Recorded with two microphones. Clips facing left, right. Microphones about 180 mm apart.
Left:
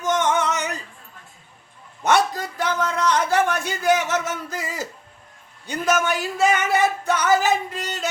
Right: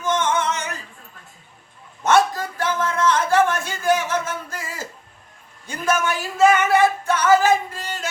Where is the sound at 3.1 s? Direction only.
15° left (ahead or behind).